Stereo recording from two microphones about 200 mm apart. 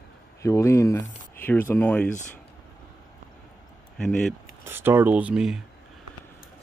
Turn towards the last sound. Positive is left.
turn(degrees=-5)  # may be behind; listen again after turning